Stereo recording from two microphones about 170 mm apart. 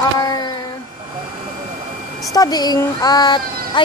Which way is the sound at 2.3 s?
25° left (ahead or behind).